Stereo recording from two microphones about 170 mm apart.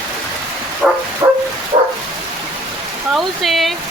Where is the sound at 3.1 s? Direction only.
Centre (ahead or behind).